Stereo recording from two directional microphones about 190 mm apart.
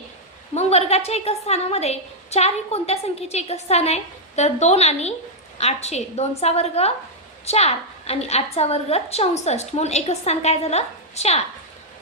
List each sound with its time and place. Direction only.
0.5 s a woman's voice: 35° left (ahead or behind)